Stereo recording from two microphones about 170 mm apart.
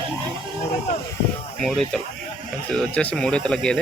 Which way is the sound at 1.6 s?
Centre (ahead or behind).